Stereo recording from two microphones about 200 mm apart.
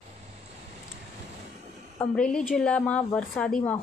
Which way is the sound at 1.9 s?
5° left (ahead or behind).